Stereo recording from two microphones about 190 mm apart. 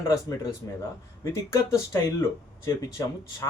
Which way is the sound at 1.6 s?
15° left (ahead or behind).